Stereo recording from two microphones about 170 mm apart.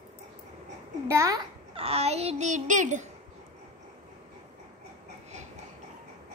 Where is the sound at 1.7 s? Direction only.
35° right (ahead or behind).